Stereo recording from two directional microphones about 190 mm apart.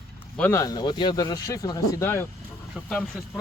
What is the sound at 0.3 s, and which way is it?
Speech, 10° left (ahead or behind).